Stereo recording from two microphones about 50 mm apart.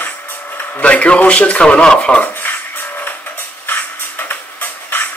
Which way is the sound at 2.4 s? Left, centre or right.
Left.